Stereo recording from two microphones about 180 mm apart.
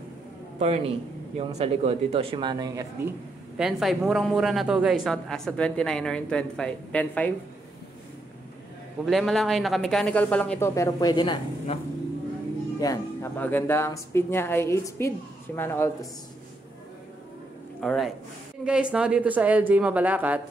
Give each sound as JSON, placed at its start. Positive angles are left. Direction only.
{"t": 0.6, "sound": "a man's voice", "side_deg": -35}
{"t": 3.5, "sound": "a woman's voice", "side_deg": -5}
{"t": 9.0, "sound": "a woman's voice", "side_deg": 0}
{"t": 12.8, "sound": "music", "side_deg": 20}
{"t": 13.4, "sound": "a woman's voice", "side_deg": 10}
{"t": 17.7, "sound": "speech", "side_deg": 0}